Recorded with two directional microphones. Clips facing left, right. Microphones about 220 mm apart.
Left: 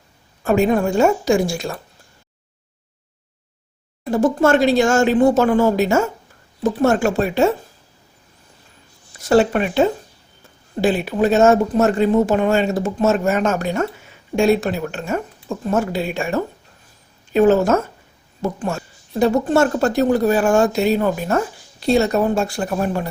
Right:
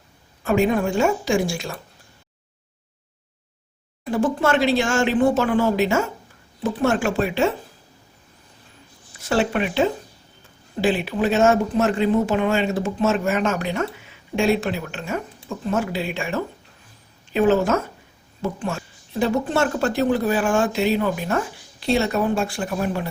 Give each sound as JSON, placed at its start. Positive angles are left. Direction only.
{"t": 0.4, "sound": "speech", "side_deg": 40}
{"t": 4.1, "sound": "speech", "side_deg": 45}
{"t": 9.3, "sound": "speech", "side_deg": 40}